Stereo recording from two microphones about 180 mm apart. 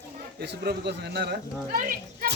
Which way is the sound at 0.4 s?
65° right (ahead or behind).